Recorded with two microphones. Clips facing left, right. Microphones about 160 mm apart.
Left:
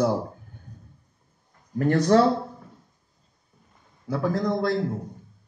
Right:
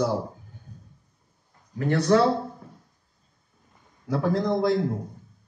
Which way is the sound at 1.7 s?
45° left (ahead or behind).